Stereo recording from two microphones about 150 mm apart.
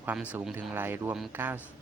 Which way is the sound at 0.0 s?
15° right (ahead or behind).